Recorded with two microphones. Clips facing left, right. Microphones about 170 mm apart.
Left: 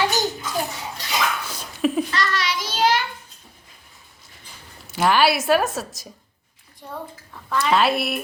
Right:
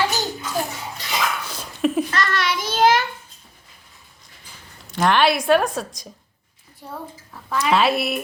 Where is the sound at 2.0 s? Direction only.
50° right (ahead or behind).